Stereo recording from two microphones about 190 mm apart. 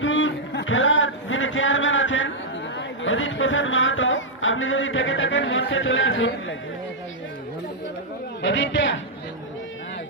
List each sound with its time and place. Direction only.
0.0 s a sound: 90° left
2.7 s speech: 85° left
8.4 s a man's voice: 75° left (ahead or behind)